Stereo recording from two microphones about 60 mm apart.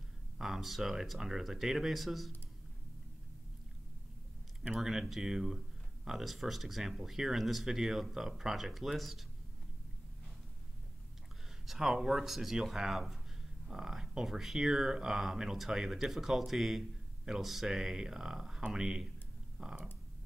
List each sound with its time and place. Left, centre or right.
0.4 s speech: centre
4.7 s speech: centre
11.6 s speech: centre